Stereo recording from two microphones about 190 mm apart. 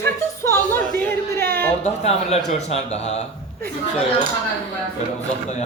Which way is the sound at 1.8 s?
35° left (ahead or behind).